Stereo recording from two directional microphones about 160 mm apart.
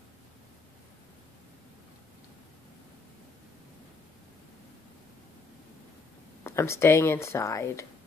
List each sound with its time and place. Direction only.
6.4 s speech: 15° left (ahead or behind)